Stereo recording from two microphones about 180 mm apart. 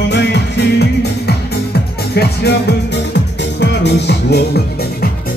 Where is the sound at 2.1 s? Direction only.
65° left (ahead or behind).